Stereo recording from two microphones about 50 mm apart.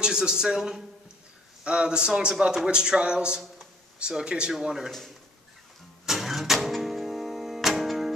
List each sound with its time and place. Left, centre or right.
0.0 s speech: centre
6.0 s music: centre